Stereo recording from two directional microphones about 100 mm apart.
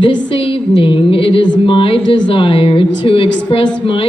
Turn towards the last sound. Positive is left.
turn(degrees=65)  # may be behind; listen again after turning